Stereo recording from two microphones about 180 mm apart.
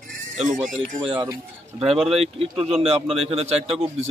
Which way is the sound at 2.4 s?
35° right (ahead or behind).